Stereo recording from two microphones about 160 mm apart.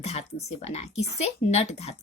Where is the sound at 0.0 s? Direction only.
45° left (ahead or behind).